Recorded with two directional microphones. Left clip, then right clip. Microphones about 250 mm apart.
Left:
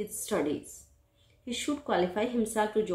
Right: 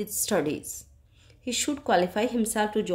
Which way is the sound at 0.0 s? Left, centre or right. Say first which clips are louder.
Right 4 dB; right.